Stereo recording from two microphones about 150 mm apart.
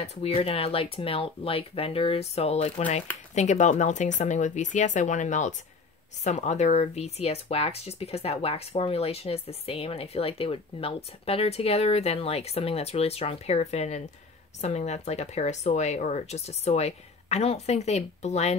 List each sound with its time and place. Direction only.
0.0 s speech: 45° left (ahead or behind)